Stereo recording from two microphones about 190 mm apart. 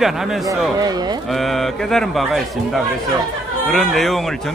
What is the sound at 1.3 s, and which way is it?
A man's voice, centre (ahead or behind).